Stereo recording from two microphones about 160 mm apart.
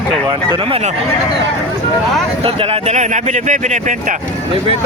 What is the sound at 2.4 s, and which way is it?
Speech, 35° right (ahead or behind).